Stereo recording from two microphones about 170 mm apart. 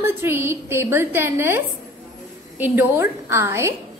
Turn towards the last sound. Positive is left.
turn(degrees=-15)  # may be behind; listen again after turning